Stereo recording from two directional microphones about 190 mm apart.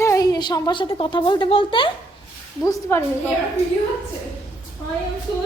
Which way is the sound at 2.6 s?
15° left (ahead or behind).